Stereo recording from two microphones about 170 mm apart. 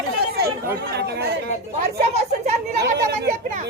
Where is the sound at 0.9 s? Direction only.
75° right (ahead or behind).